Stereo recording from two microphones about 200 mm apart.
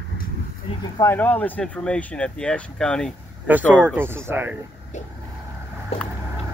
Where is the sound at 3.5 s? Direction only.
10° right (ahead or behind).